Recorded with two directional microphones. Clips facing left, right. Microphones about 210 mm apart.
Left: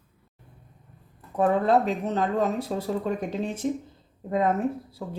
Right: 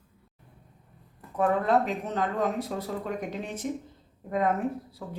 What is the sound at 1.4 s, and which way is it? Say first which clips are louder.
Speech: left 3 dB; 30° left (ahead or behind).